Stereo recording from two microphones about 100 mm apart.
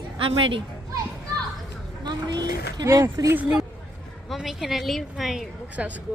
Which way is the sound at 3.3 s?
10° right (ahead or behind).